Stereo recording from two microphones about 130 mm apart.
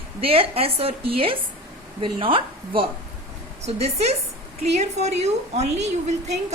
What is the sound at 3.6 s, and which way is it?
A woman's voice, 55° right (ahead or behind).